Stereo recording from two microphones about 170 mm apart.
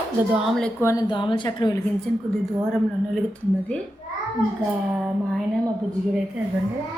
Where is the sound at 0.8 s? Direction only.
20° left (ahead or behind).